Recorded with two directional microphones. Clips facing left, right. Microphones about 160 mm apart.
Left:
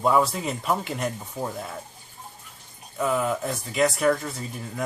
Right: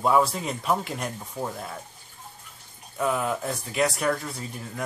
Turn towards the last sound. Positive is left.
turn(degrees=0)  # may be behind; listen again after turning